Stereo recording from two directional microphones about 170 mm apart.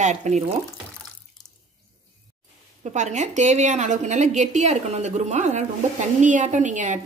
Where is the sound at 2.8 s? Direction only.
45° right (ahead or behind).